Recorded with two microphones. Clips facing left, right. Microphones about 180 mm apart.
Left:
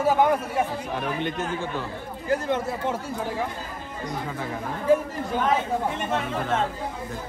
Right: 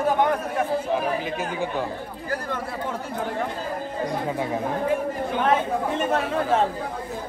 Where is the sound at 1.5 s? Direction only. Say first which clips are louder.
Right 3 dB; 15° right (ahead or behind).